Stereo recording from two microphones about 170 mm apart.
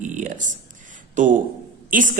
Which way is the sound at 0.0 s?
45° right (ahead or behind).